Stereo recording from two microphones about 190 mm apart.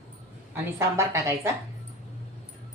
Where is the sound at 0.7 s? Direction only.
15° right (ahead or behind).